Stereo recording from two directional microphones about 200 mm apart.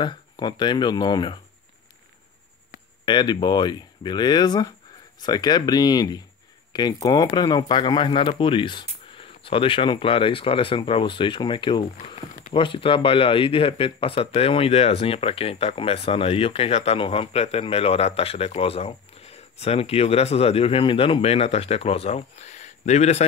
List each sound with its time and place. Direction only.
0.0 s speech: 20° left (ahead or behind)
3.1 s speech: 25° left (ahead or behind)